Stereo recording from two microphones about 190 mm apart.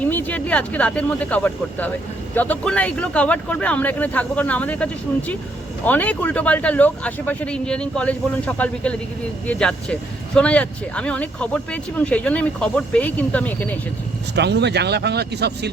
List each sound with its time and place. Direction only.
0.0 s speech: 10° left (ahead or behind)
14.3 s speech: 65° right (ahead or behind)